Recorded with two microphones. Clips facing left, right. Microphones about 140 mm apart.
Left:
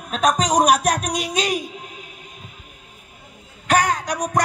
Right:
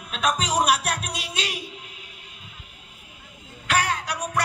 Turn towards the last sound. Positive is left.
turn(degrees=40)  # may be behind; listen again after turning